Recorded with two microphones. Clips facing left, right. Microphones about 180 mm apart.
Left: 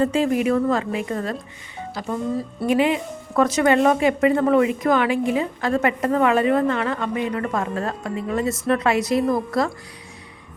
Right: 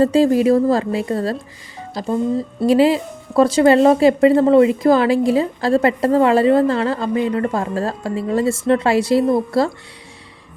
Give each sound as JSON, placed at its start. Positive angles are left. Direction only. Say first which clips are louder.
{"t": 0.0, "sound": "a woman's voice", "louder": "right 6 dB", "side_deg": -35}